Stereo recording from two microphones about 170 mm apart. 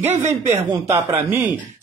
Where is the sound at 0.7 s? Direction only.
20° right (ahead or behind).